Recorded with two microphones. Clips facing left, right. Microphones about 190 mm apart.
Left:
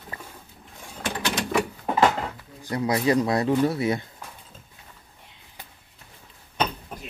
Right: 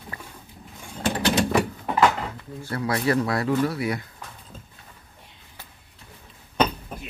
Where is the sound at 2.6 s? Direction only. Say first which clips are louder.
Left 2 dB; 20° left (ahead or behind).